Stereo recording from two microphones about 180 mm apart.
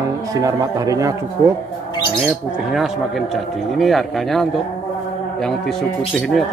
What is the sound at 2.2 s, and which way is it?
Speech, centre (ahead or behind).